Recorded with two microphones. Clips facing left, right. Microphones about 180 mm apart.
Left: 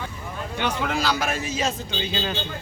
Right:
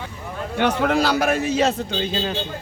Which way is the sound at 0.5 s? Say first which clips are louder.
Right 7 dB; 65° right (ahead or behind).